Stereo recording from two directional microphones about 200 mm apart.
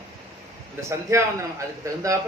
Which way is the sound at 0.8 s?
15° right (ahead or behind).